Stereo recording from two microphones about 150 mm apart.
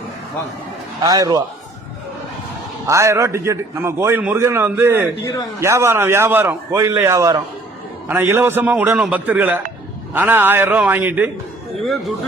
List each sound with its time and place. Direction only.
1.0 s a man's voice: 25° right (ahead or behind)
2.8 s a man's voice: 20° right (ahead or behind)